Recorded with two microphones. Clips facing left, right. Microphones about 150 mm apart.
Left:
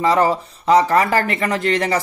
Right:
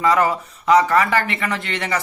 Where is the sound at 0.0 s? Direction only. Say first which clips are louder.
Left 2 dB; 30° left (ahead or behind).